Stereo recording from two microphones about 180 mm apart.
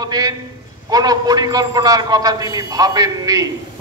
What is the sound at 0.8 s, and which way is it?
Speech, 20° right (ahead or behind).